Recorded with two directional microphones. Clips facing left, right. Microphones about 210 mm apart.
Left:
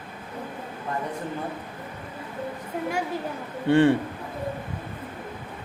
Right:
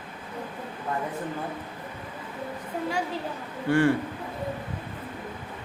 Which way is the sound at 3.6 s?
25° left (ahead or behind).